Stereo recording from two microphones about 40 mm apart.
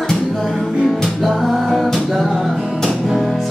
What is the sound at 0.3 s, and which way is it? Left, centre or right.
Music, centre.